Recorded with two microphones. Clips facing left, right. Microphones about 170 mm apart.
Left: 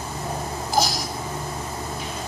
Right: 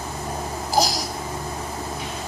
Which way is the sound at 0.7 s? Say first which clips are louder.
Right 2 dB; 35° right (ahead or behind).